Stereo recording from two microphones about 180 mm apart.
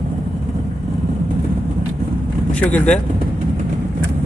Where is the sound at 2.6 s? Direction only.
10° left (ahead or behind).